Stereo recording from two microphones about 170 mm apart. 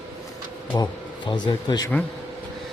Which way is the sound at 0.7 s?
25° left (ahead or behind).